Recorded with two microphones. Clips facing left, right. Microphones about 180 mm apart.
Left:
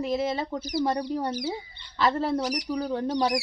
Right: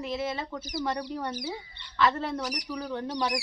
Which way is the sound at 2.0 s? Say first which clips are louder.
Left 3 dB; 35° left (ahead or behind).